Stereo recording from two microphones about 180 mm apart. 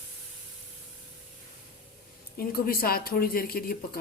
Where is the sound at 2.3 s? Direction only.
55° left (ahead or behind).